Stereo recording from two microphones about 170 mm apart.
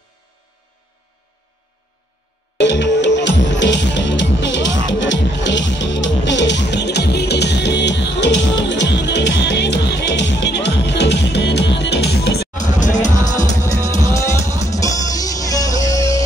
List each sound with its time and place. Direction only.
2.6 s music: 90° left
12.5 s music: 45° left (ahead or behind)
13.6 s music: 20° left (ahead or behind)